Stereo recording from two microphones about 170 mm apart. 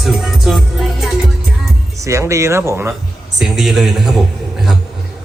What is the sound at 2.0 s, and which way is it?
Speech, 15° right (ahead or behind).